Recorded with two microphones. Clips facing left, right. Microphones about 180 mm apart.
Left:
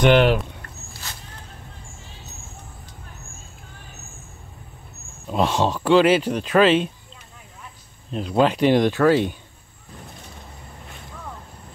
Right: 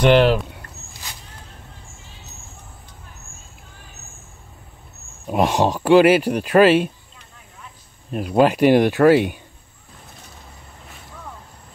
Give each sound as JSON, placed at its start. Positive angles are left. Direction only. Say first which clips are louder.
{"t": 0.0, "sound": "speech", "louder": "right 2 dB", "side_deg": 0}
{"t": 5.2, "sound": "speech", "louder": "right 3 dB", "side_deg": -10}
{"t": 8.1, "sound": "speech", "louder": "right 3 dB", "side_deg": -10}